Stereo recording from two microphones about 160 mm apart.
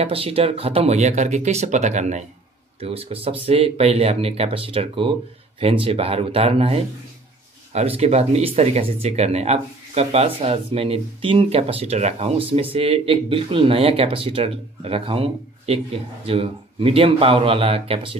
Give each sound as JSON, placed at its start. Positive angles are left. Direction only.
{"t": 0.0, "sound": "speech", "side_deg": -35}
{"t": 2.8, "sound": "speech", "side_deg": -35}